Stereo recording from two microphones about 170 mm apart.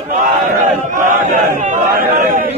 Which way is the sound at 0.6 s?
50° right (ahead or behind).